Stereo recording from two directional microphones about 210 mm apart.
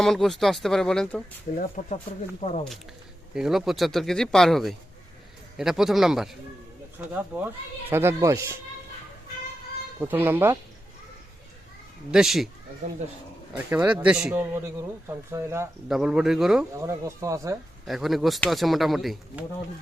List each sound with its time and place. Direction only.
0.0 s speech: centre (ahead or behind)
1.5 s speech: 40° left (ahead or behind)
3.3 s speech: centre (ahead or behind)
10.0 s speech: 10° right (ahead or behind)
12.1 s speech: centre (ahead or behind)
13.7 s speech: 5° right (ahead or behind)
16.8 s speech: 15° right (ahead or behind)
17.8 s speech: centre (ahead or behind)